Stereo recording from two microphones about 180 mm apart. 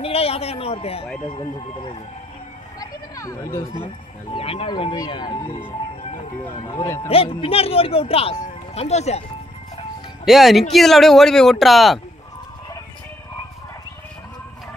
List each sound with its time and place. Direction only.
0.0 s speech: 35° left (ahead or behind); by 3.6 s 15° left (ahead or behind)
4.4 s speech: 30° left (ahead or behind)
6.7 s speech: 15° left (ahead or behind)
7.1 s speech: 30° left (ahead or behind)
10.2 s speech: centre (ahead or behind)